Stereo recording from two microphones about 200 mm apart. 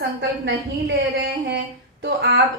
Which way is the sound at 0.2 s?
60° right (ahead or behind).